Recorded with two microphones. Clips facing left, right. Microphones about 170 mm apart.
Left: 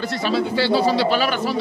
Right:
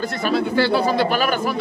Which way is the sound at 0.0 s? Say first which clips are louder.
Right 1 dB; 50° right (ahead or behind).